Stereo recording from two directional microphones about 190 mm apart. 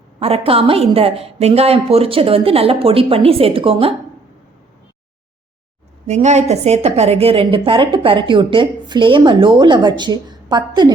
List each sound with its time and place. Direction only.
0.2 s a woman's voice: 30° right (ahead or behind)
6.1 s a woman's voice: 35° right (ahead or behind); by 10.9 s 20° right (ahead or behind)